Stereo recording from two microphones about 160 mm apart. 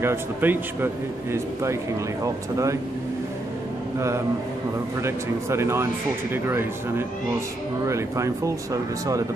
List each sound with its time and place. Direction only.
0.0 s speech: 15° right (ahead or behind)
5.0 s speech: 15° right (ahead or behind)